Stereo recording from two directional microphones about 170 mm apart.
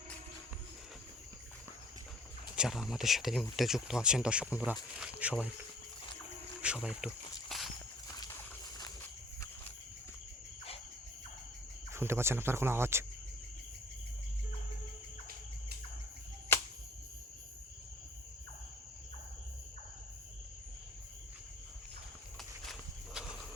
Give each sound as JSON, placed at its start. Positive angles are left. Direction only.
{"t": 2.6, "sound": "speech", "side_deg": 0}
{"t": 6.6, "sound": "a sound", "side_deg": -5}
{"t": 8.8, "sound": "walk", "side_deg": 15}
{"t": 11.9, "sound": "speech", "side_deg": -15}
{"t": 22.6, "sound": "walk", "side_deg": 0}